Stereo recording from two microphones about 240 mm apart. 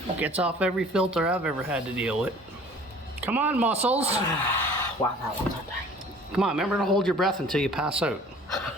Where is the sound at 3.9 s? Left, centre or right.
Right.